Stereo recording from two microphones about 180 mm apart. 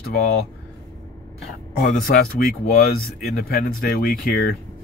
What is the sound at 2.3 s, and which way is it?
Speech, 60° left (ahead or behind).